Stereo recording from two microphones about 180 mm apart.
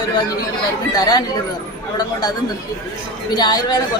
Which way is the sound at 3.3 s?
20° left (ahead or behind).